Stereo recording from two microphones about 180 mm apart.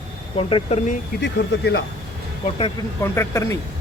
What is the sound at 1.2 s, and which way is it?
Speech, 75° left (ahead or behind).